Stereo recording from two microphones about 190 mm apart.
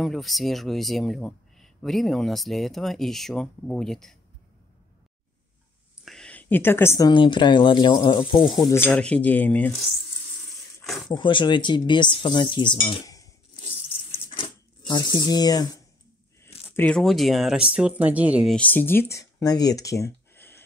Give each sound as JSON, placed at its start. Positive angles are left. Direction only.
{"t": 0.0, "sound": "speech", "side_deg": 0}
{"t": 6.0, "sound": "a woman's voice", "side_deg": 5}
{"t": 11.1, "sound": "speech", "side_deg": 25}
{"t": 14.1, "sound": "a sound", "side_deg": 25}
{"t": 16.6, "sound": "speech", "side_deg": 10}
{"t": 18.6, "sound": "speech", "side_deg": 10}